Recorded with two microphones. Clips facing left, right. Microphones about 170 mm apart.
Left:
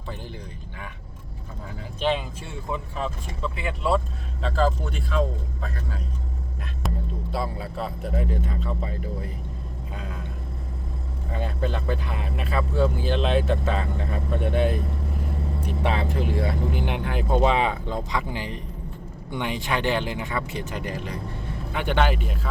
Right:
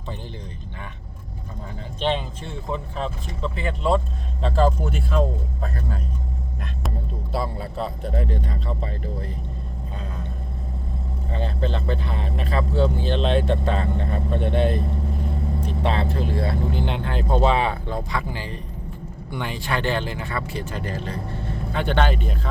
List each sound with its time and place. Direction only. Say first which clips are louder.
2.0 s speech: right 1 dB; 5° left (ahead or behind)
7.3 s speech: right 3 dB; centre (ahead or behind)
11.3 s speech: right 1 dB; 10° left (ahead or behind)
12.1 s speech: right 2 dB; 35° right (ahead or behind)
12.8 s speech: right 1 dB; 10° left (ahead or behind)
13.5 s speech: right 2 dB; 35° right (ahead or behind)
14.3 s speech: right 1 dB; 10° left (ahead or behind)